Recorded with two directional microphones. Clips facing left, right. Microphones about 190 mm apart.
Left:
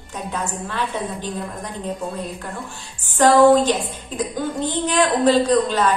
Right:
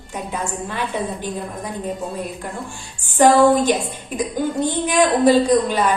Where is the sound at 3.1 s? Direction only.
10° right (ahead or behind).